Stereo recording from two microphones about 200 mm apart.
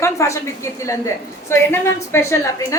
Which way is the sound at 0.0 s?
15° left (ahead or behind).